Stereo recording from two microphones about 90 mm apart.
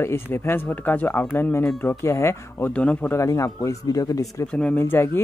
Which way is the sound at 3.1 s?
35° left (ahead or behind).